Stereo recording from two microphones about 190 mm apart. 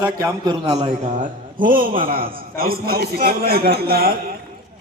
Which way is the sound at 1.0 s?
40° right (ahead or behind).